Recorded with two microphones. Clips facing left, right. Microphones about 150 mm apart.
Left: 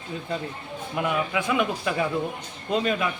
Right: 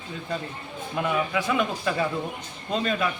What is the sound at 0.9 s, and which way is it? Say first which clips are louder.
A man's voice: even; 10° left (ahead or behind).